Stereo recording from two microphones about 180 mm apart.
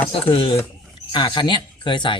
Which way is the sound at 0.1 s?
30° left (ahead or behind).